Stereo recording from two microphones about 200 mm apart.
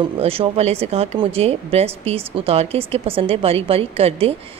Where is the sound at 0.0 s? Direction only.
30° right (ahead or behind).